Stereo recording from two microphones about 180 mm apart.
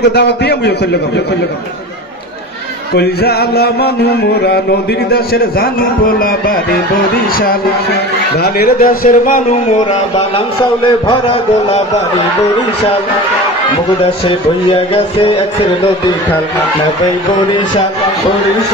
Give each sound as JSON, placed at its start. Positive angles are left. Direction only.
{"t": 0.1, "sound": "a man's voice", "side_deg": 70}
{"t": 2.9, "sound": "a sound", "side_deg": 65}
{"t": 8.4, "sound": "a man's voice", "side_deg": 55}
{"t": 10.1, "sound": "a man's voice", "side_deg": 30}